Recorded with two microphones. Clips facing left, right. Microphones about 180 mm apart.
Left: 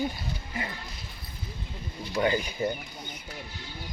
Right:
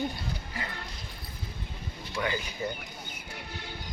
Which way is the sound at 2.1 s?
25° left (ahead or behind).